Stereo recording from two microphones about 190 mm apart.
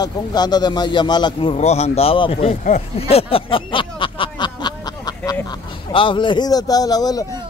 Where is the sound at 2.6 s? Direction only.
35° left (ahead or behind); by 5.3 s 20° left (ahead or behind).